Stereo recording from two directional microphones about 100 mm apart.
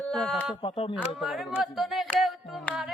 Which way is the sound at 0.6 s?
60° left (ahead or behind).